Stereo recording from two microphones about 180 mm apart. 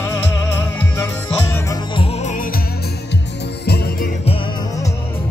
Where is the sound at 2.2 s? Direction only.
40° left (ahead or behind).